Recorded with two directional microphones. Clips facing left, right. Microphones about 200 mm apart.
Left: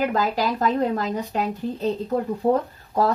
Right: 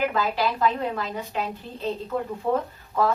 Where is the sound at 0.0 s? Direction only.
40° left (ahead or behind).